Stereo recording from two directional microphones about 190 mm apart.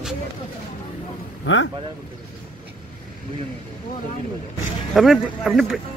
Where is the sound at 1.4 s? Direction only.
80° left.